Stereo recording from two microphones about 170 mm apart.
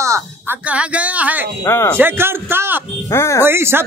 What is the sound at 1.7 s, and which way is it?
Speech, 15° left (ahead or behind).